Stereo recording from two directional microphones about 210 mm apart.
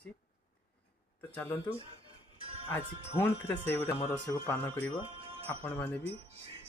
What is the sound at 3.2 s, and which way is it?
Speech, 10° left (ahead or behind).